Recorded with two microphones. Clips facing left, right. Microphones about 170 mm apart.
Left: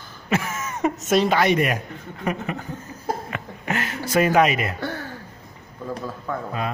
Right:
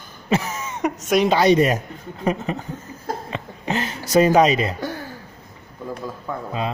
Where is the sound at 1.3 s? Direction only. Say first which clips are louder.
Right 4 dB; 30° right (ahead or behind).